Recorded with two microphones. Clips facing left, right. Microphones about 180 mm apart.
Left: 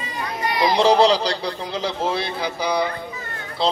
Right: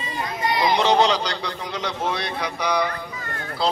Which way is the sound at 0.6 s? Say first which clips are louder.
Left 3 dB; 30° left (ahead or behind).